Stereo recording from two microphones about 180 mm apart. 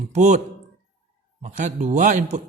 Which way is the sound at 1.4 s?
40° right (ahead or behind).